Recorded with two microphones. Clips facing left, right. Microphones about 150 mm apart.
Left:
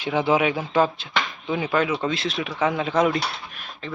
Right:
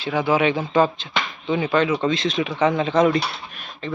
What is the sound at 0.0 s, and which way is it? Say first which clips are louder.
Speech: even; 20° left (ahead or behind).